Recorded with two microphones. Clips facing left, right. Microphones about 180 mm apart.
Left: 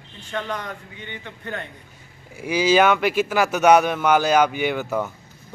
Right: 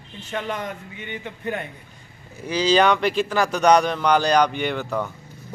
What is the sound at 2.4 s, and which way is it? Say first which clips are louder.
Speech: left 1 dB; 10° left (ahead or behind).